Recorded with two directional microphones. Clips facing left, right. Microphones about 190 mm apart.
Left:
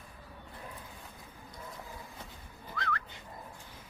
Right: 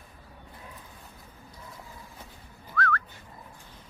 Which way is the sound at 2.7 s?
15° left (ahead or behind).